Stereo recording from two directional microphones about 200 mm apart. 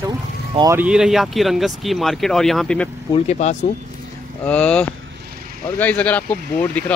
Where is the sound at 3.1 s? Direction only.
35° left (ahead or behind).